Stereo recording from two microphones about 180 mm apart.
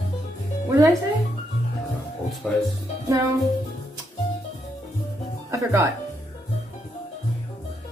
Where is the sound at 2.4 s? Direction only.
5° left (ahead or behind).